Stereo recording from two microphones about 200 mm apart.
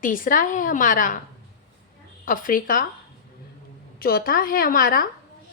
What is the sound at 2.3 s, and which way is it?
Speech, 45° left (ahead or behind).